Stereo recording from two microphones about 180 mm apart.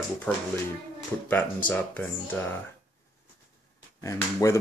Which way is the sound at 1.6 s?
10° left (ahead or behind).